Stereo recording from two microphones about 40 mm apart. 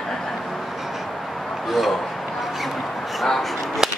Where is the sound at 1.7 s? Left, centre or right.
Centre.